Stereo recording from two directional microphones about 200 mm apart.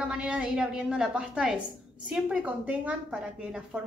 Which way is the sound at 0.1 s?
5° right (ahead or behind).